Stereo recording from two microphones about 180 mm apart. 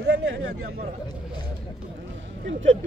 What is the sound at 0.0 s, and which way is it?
Speech, 70° right (ahead or behind).